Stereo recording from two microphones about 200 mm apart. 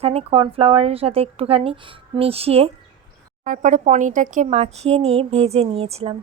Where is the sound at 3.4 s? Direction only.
40° right (ahead or behind).